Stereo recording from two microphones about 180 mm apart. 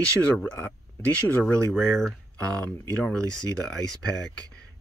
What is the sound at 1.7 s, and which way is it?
Speech, centre (ahead or behind).